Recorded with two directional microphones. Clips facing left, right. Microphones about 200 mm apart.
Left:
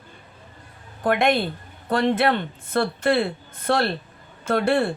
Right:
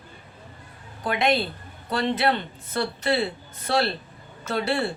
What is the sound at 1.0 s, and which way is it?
A woman's voice, 55° left (ahead or behind).